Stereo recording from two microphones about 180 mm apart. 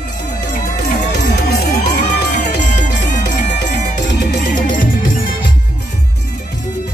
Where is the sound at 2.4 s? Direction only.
40° left (ahead or behind).